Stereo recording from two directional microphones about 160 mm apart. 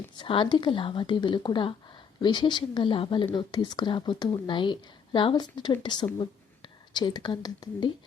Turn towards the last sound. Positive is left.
turn(degrees=25)  # may be behind; listen again after turning